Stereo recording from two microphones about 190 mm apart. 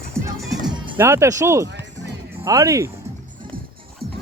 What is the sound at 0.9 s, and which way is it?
Speech, 15° right (ahead or behind).